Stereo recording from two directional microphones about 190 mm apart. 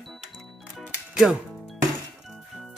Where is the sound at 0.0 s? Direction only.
Centre (ahead or behind).